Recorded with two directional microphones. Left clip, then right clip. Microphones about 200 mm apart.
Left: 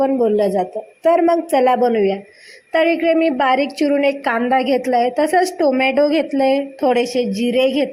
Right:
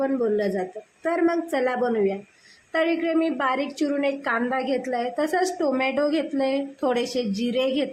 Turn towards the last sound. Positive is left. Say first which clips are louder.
# left 8 dB
turn(degrees=20)  # may be behind; listen again after turning